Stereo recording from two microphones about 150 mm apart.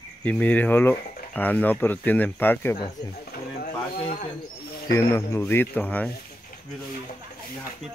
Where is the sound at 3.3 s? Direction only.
70° left (ahead or behind).